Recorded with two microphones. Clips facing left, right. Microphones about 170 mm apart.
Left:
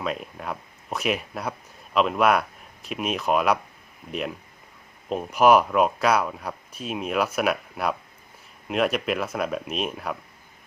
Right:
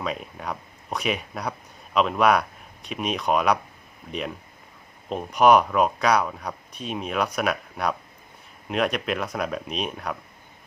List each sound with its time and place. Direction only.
0.0 s speech: centre (ahead or behind)